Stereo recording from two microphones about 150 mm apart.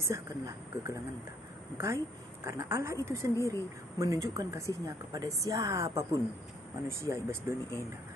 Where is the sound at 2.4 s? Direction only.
20° right (ahead or behind).